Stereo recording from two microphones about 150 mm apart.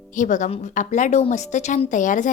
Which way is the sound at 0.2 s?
55° left (ahead or behind).